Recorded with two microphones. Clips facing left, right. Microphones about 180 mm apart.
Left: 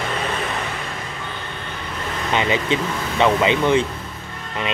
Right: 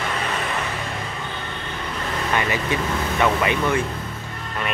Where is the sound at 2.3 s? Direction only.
20° left (ahead or behind).